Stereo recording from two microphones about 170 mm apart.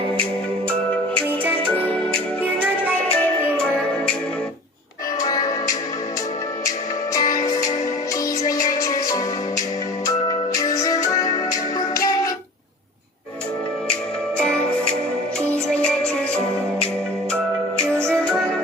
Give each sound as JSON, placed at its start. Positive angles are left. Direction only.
{"t": 2.4, "sound": "music", "side_deg": -10}
{"t": 3.8, "sound": "music", "side_deg": 5}
{"t": 5.2, "sound": "music", "side_deg": 20}
{"t": 7.1, "sound": "music", "side_deg": 20}
{"t": 14.3, "sound": "music", "side_deg": 5}
{"t": 17.7, "sound": "music", "side_deg": -15}